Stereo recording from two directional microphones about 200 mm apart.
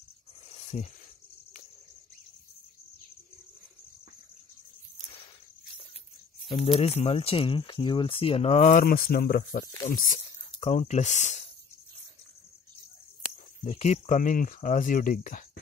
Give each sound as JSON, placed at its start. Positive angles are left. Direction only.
{"t": 0.5, "sound": "a sound", "side_deg": 30}
{"t": 6.5, "sound": "speech", "side_deg": 30}
{"t": 9.8, "sound": "speech", "side_deg": 35}
{"t": 13.7, "sound": "speech", "side_deg": 35}